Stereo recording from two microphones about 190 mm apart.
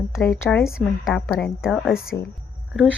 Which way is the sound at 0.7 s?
Centre (ahead or behind).